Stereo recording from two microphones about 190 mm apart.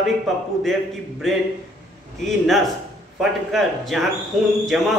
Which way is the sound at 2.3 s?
Centre (ahead or behind).